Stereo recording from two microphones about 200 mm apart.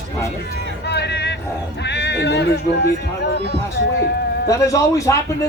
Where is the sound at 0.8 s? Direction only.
55° left (ahead or behind).